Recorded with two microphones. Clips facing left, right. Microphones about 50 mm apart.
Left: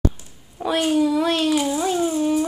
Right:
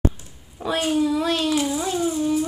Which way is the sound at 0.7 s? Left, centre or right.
Centre.